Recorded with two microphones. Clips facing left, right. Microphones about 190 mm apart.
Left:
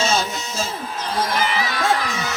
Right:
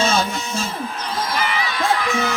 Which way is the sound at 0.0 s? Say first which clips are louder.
Right 2 dB; 55° right (ahead or behind).